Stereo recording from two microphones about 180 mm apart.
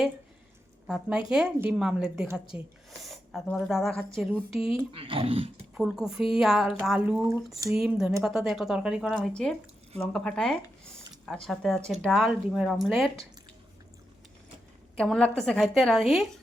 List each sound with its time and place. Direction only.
0.9 s speech: 5° right (ahead or behind)
3.0 s speech: centre (ahead or behind)
4.8 s speech: 30° right (ahead or behind)
5.7 s speech: 5° right (ahead or behind)
14.9 s speech: 5° left (ahead or behind)